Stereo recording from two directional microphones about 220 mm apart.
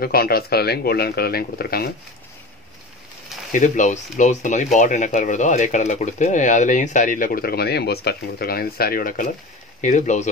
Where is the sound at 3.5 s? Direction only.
35° left (ahead or behind).